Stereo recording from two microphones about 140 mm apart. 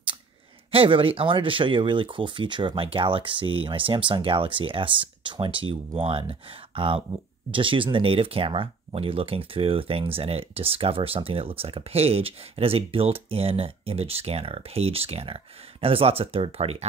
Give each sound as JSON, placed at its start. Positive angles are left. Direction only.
{"t": 0.7, "sound": "speech", "side_deg": -40}